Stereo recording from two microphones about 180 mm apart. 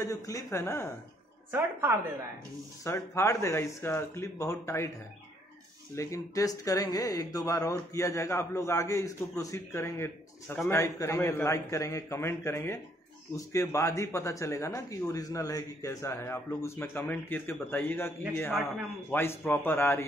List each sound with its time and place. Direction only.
0.0 s speech: 20° left (ahead or behind)
1.5 s a woman's voice: 10° right (ahead or behind)
2.8 s speech: 15° left (ahead or behind)
5.9 s speech: 15° left (ahead or behind)